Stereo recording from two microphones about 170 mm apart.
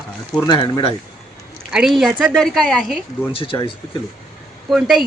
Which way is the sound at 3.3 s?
35° left (ahead or behind).